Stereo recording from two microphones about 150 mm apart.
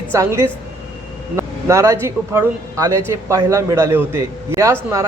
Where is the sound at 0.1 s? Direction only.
20° right (ahead or behind).